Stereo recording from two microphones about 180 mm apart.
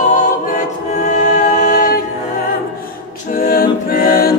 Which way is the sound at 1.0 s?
45° left (ahead or behind).